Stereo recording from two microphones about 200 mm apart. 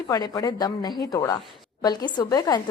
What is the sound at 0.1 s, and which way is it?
A woman's voice, 15° left (ahead or behind).